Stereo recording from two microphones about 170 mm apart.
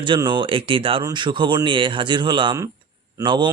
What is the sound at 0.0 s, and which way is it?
Speech, 30° right (ahead or behind).